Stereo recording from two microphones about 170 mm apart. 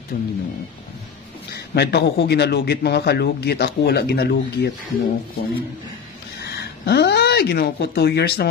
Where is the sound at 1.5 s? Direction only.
75° left (ahead or behind).